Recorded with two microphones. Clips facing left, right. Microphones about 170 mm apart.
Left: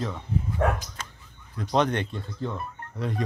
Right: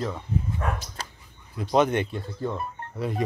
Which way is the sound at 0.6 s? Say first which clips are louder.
Left 9 dB; 90° left.